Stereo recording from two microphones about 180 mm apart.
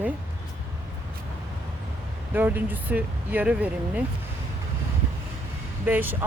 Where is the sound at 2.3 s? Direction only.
10° right (ahead or behind).